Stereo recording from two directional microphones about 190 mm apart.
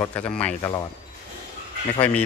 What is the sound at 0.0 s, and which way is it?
Speech, 5° left (ahead or behind).